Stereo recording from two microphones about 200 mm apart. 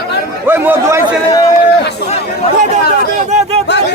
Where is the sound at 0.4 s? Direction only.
10° right (ahead or behind).